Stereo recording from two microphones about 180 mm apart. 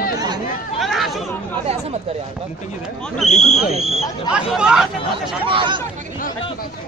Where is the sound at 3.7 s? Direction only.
40° right (ahead or behind).